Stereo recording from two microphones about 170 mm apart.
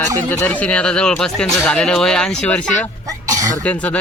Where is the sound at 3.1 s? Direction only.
20° right (ahead or behind).